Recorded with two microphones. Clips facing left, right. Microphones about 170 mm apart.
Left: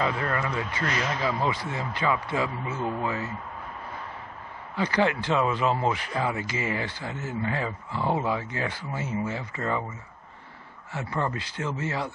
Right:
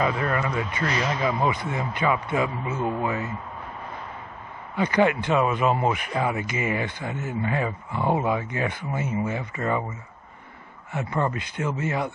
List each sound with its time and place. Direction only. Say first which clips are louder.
0.0 s speech: right 3 dB; 20° right (ahead or behind)
4.7 s speech: right 4 dB; 20° right (ahead or behind)
10.9 s speech: right 3 dB; 20° right (ahead or behind)